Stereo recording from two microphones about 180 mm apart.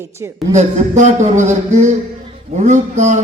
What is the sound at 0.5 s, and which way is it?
A man's voice, 40° right (ahead or behind).